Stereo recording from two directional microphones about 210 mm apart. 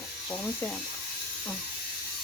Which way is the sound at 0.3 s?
5° left (ahead or behind).